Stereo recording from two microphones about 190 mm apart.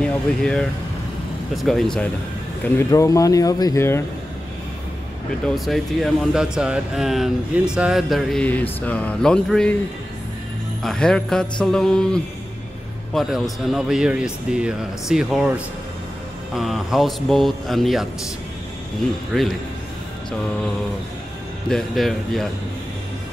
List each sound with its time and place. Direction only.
0.0 s speech: 5° left (ahead or behind)
2.8 s speech: 15° left (ahead or behind)
5.5 s speech: centre (ahead or behind)
10.8 s speech: 5° left (ahead or behind)
19.3 s speech: centre (ahead or behind)
21.6 s speech: centre (ahead or behind)